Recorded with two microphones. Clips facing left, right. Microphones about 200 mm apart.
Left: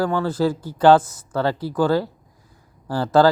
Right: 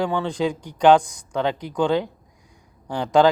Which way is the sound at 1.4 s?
15° right (ahead or behind).